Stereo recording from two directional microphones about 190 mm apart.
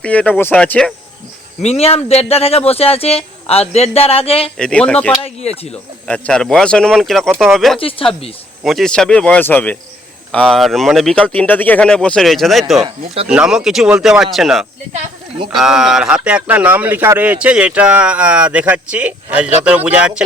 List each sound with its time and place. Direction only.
0.0 s speech: 5° left (ahead or behind)
1.6 s speech: 30° left (ahead or behind)
4.5 s speech: 5° left (ahead or behind)
5.2 s speech: 35° left (ahead or behind)
6.1 s speech: 5° left (ahead or behind)
7.8 s speech: 30° left (ahead or behind)
8.6 s speech: centre (ahead or behind)